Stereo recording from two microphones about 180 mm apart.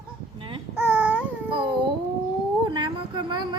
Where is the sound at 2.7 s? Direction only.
25° right (ahead or behind).